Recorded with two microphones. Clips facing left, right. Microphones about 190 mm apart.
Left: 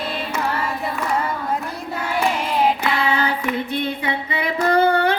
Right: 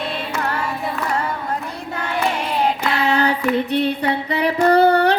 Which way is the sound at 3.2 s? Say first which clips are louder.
Right 4 dB; 75° right (ahead or behind).